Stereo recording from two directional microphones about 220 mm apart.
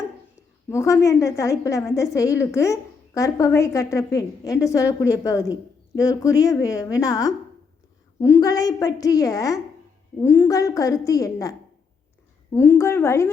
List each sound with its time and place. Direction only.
0.7 s a woman's voice: 15° left (ahead or behind)
12.5 s a woman's voice: 10° left (ahead or behind)